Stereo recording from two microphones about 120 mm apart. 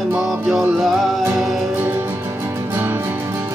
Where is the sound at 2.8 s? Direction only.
20° right (ahead or behind).